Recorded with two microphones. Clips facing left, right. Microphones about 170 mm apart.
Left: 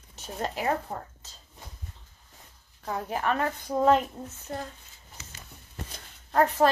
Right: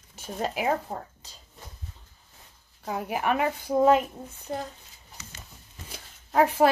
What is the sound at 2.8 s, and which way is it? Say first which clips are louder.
Speech: right 1 dB; 10° right (ahead or behind).